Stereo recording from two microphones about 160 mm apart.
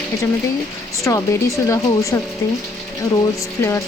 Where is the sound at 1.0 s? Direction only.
20° left (ahead or behind).